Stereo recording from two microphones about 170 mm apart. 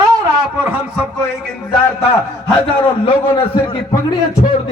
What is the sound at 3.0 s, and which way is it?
Speech, 30° left (ahead or behind).